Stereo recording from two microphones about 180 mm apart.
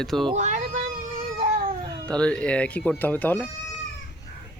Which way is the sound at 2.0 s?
5° left (ahead or behind).